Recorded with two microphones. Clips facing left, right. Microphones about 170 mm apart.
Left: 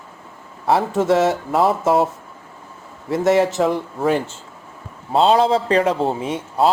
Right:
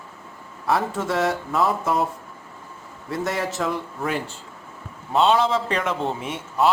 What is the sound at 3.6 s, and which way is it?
A man's voice, 35° left (ahead or behind).